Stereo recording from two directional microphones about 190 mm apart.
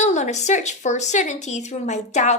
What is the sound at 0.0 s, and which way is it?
A woman's voice, 35° left (ahead or behind).